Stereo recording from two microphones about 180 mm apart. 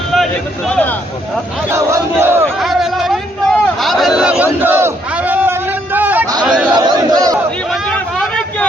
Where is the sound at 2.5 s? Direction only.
Centre (ahead or behind).